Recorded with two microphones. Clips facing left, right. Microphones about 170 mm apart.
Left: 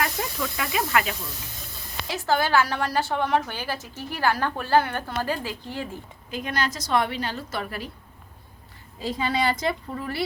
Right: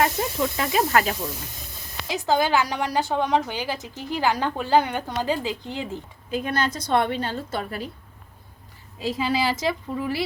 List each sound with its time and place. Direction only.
0.0 s snake: 25° right (ahead or behind)
2.0 s a woman's voice: 15° right (ahead or behind)
6.6 s a woman's voice: 30° right (ahead or behind)
9.0 s speech: centre (ahead or behind)